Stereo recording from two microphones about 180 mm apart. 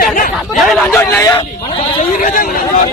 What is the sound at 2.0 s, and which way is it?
Speech, 45° left (ahead or behind).